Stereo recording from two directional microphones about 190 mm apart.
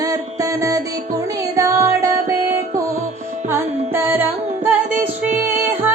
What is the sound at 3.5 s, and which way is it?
Music, 10° right (ahead or behind).